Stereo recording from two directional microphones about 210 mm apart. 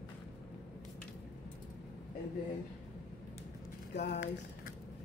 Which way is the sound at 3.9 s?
55° left (ahead or behind).